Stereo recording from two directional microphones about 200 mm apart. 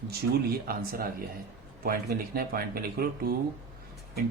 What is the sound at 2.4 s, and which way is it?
Speech, 50° right (ahead or behind).